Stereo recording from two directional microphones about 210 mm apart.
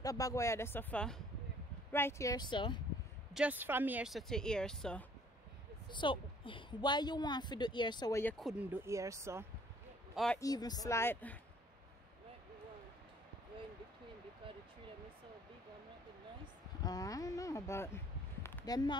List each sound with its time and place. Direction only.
0.0 s speech: 15° left (ahead or behind)
3.3 s speech: 5° right (ahead or behind)
5.9 s a woman's voice: 20° left (ahead or behind)
8.2 s speech: 5° left (ahead or behind); by 9.5 s 15° right (ahead or behind)
10.1 s speech: 5° left (ahead or behind)
10.4 s speech: 20° left (ahead or behind)
16.8 s speech: 15° left (ahead or behind)